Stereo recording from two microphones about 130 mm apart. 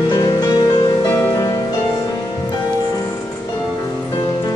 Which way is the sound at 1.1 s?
25° left (ahead or behind).